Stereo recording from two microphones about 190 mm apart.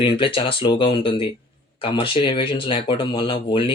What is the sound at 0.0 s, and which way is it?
Speech, 25° left (ahead or behind).